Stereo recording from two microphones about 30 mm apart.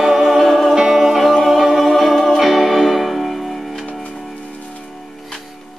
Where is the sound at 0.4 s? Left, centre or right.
Centre.